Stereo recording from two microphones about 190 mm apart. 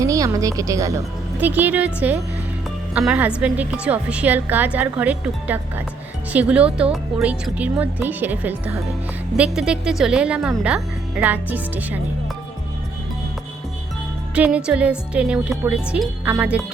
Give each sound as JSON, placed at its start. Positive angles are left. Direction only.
{"t": 0.0, "sound": "a woman's voice", "side_deg": -15}
{"t": 14.3, "sound": "a woman's voice", "side_deg": -5}